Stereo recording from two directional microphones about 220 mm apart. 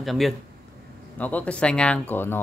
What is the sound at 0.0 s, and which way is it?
Speech, centre (ahead or behind).